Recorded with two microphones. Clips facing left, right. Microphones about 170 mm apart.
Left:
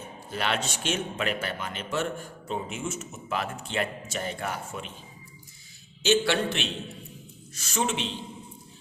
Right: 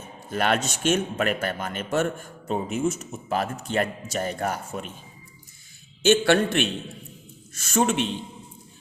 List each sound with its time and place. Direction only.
0.3 s speech: 50° right (ahead or behind)
6.0 s speech: 50° right (ahead or behind)